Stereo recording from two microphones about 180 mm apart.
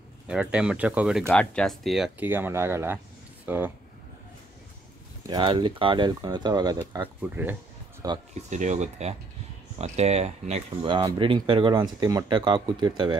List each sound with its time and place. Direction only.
0.3 s speech: 5° right (ahead or behind)
1.2 s speech: 5° left (ahead or behind); by 3.7 s 10° right (ahead or behind)
5.2 s speech: 25° right (ahead or behind)
6.8 s speech: 10° right (ahead or behind)
8.4 s speech: 40° right (ahead or behind); by 13.2 s 25° right (ahead or behind)